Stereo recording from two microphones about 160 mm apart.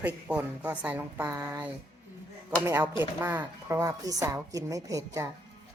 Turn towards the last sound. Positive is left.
turn(degrees=-20)  # may be behind; listen again after turning